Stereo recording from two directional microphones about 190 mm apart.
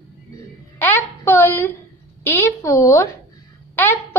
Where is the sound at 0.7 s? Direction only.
10° left (ahead or behind).